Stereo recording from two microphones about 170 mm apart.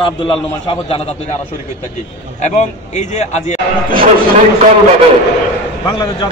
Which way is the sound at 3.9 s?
55° right (ahead or behind).